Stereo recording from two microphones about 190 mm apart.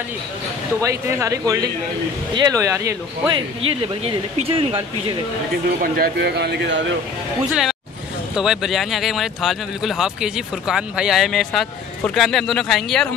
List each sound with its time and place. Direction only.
0.7 s speech: 15° right (ahead or behind)
3.6 s speech: 30° right (ahead or behind)
5.8 s speech: 50° right (ahead or behind)
8.4 s speech: centre (ahead or behind)